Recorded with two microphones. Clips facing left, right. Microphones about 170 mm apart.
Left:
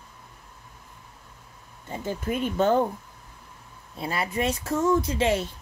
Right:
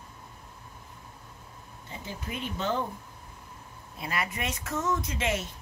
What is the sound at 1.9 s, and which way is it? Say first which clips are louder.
Speech: left 10 dB; 50° left (ahead or behind).